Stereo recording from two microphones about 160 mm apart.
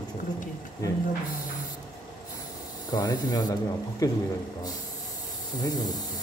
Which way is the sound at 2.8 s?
25° left (ahead or behind).